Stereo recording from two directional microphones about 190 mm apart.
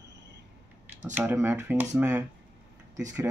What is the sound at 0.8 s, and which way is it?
Speech, 10° right (ahead or behind).